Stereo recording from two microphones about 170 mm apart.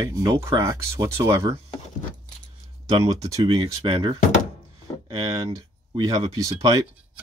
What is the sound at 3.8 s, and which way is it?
Speech, 30° right (ahead or behind).